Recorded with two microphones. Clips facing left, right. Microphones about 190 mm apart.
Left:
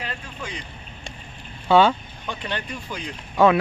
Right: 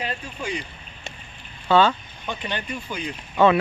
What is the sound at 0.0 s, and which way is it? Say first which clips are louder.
Speech: right 4 dB; 15° right (ahead or behind).